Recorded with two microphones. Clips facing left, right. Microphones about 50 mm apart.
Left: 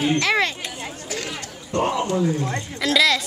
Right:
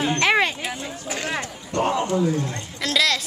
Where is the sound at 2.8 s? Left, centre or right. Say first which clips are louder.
Left 3 dB; centre.